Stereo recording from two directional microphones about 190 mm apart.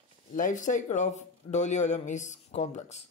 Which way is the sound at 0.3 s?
40° left (ahead or behind).